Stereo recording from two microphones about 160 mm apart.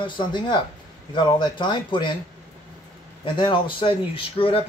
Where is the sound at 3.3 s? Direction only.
30° left (ahead or behind).